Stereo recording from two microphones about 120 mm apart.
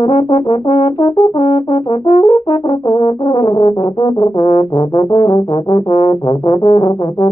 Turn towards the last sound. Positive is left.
turn(degrees=35)  # may be behind; listen again after turning